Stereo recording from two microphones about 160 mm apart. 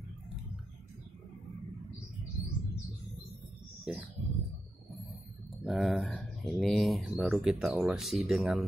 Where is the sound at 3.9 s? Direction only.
Centre (ahead or behind).